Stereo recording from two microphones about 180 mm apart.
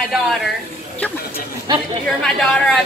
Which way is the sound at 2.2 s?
5° left (ahead or behind).